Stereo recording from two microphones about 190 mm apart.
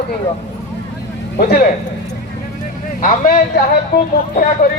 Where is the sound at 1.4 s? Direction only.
55° left (ahead or behind).